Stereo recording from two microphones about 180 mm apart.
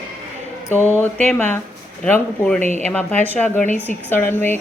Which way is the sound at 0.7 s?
10° left (ahead or behind).